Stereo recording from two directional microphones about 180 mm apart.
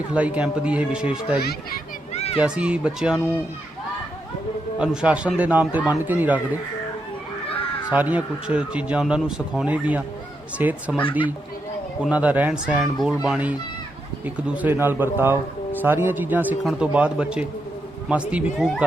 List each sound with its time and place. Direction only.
0.1 s speech: 10° right (ahead or behind)
1.4 s a child's voice: 60° left (ahead or behind)
2.1 s a sound: 35° left (ahead or behind)
2.4 s speech: 5° right (ahead or behind)
4.8 s speech: 5° right (ahead or behind)
7.9 s speech: 10° right (ahead or behind)
12.0 s speech: 5° right (ahead or behind)